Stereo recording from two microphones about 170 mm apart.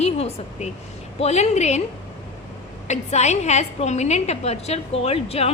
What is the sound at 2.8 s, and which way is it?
A woman's voice, 40° left (ahead or behind).